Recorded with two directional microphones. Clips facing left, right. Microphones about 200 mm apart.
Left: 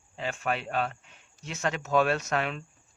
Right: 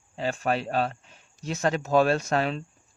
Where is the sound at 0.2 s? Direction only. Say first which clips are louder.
Right 5 dB; 35° right (ahead or behind).